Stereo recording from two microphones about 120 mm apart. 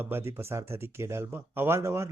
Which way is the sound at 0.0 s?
20° right (ahead or behind).